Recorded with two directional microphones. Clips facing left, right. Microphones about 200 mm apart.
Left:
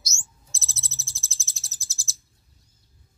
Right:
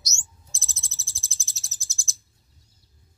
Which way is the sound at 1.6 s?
10° left (ahead or behind).